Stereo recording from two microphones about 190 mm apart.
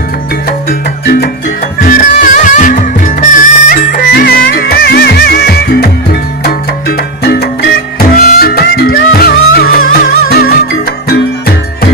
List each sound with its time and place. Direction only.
0.5 s music: 50° left (ahead or behind)
6.4 s salsa music: 55° left (ahead or behind)
8.1 s music: 50° left (ahead or behind)